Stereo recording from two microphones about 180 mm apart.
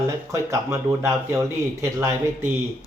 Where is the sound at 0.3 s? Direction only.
15° right (ahead or behind).